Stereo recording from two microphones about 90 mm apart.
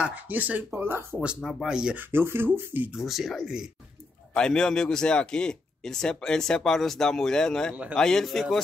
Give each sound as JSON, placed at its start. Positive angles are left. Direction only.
{"t": 0.0, "sound": "speech", "side_deg": -20}
{"t": 1.2, "sound": "speech", "side_deg": -10}
{"t": 2.0, "sound": "speech", "side_deg": -25}
{"t": 2.9, "sound": "speech", "side_deg": -5}
{"t": 4.3, "sound": "speech", "side_deg": 10}